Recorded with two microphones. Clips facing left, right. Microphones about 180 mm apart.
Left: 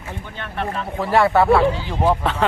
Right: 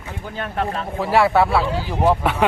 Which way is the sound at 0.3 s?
40° right (ahead or behind).